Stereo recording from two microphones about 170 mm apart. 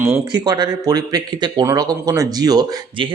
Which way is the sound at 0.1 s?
20° right (ahead or behind).